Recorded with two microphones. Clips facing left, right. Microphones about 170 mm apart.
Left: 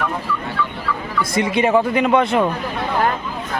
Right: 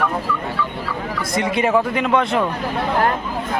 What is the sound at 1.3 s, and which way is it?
A man's voice, centre (ahead or behind).